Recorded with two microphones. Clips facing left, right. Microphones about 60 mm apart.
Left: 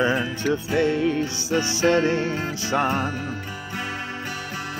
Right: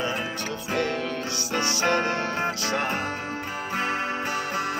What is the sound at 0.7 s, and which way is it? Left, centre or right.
Music, centre.